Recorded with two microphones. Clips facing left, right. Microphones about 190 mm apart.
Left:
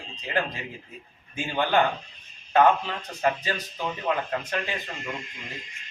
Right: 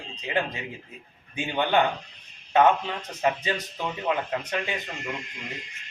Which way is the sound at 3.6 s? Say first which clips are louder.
Even; centre (ahead or behind).